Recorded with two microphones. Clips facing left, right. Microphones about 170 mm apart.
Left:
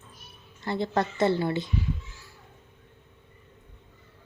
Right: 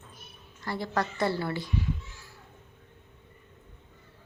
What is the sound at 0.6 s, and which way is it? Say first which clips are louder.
A woman's voice: left 4 dB; 25° left (ahead or behind).